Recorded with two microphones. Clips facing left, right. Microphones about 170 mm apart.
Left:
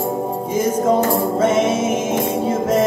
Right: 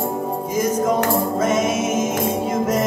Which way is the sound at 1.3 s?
30° left (ahead or behind).